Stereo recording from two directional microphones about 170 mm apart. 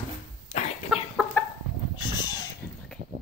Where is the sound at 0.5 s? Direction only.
40° left (ahead or behind).